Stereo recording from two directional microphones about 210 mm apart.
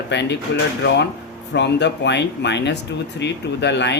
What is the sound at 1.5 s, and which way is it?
Speech, 55° left (ahead or behind).